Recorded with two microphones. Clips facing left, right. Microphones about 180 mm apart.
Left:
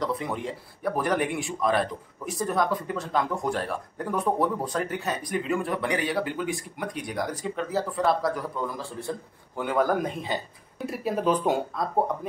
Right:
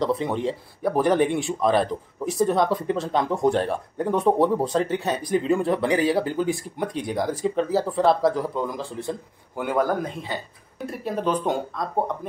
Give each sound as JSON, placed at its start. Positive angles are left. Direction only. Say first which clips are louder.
{"t": 0.0, "sound": "speech", "louder": "right 6 dB", "side_deg": -30}
{"t": 9.6, "sound": "a man's voice", "louder": "right 2 dB", "side_deg": -5}
{"t": 10.9, "sound": "speech", "louder": "even", "side_deg": 5}